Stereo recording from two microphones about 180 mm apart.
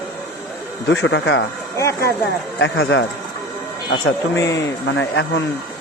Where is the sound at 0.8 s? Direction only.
90° left.